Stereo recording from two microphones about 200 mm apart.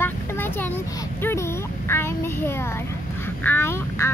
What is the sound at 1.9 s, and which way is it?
Speech, 10° left (ahead or behind).